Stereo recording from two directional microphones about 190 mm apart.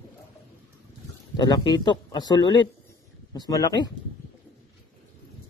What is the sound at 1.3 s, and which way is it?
Speech, 25° left (ahead or behind).